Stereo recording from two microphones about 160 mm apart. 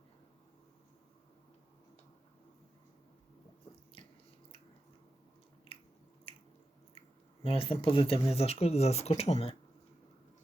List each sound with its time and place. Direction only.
7.4 s speech: 35° left (ahead or behind)